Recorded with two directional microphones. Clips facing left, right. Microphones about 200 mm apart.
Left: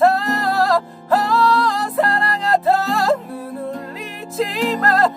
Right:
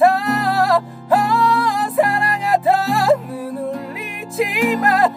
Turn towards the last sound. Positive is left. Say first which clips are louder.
# right 1 dB
turn(degrees=-15)  # may be behind; listen again after turning